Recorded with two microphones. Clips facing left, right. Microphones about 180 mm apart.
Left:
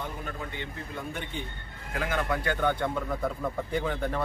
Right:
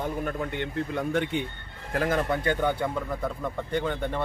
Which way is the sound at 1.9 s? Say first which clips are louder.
Right 4 dB; 35° right (ahead or behind).